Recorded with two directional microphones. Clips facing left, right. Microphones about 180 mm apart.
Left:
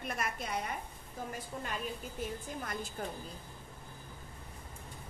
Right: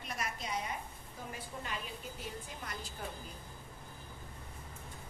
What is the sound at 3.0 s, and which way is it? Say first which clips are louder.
Speech: left 3 dB; 50° left (ahead or behind).